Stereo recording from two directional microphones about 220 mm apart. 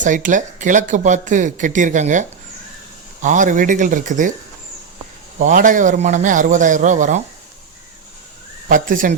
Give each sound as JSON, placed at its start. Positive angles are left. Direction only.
{"t": 0.0, "sound": "speech", "side_deg": -35}
{"t": 5.4, "sound": "speech", "side_deg": -35}
{"t": 8.7, "sound": "speech", "side_deg": -35}